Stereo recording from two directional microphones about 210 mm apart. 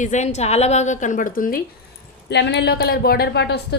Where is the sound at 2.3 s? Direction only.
55° left (ahead or behind).